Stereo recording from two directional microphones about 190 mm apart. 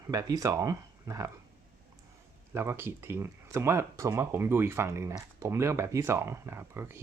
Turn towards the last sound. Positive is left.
turn(degrees=-15)  # may be behind; listen again after turning